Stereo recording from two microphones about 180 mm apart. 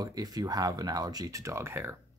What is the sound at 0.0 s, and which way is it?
Speech, 20° right (ahead or behind).